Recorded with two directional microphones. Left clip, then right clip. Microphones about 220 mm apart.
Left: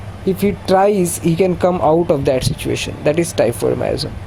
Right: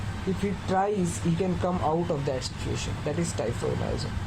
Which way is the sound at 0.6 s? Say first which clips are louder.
Left 13 dB; 75° left (ahead or behind).